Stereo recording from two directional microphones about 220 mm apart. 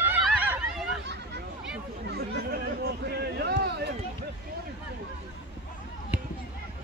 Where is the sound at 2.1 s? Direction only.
45° right (ahead or behind).